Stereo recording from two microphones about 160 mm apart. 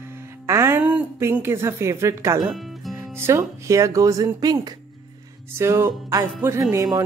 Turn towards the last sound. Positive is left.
turn(degrees=-20)  # may be behind; listen again after turning